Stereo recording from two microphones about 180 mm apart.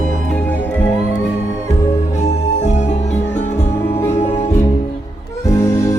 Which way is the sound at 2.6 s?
40° left (ahead or behind).